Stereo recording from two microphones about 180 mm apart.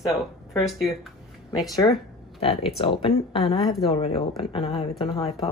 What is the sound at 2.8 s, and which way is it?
Speech, 30° left (ahead or behind).